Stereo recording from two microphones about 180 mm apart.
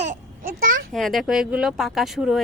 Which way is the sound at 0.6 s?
55° right (ahead or behind).